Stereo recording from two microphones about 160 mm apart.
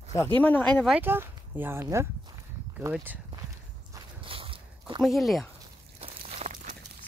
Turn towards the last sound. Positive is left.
turn(degrees=-45)  # may be behind; listen again after turning